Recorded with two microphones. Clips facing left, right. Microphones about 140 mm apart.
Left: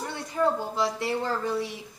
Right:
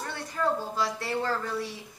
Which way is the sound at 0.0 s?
20° left (ahead or behind).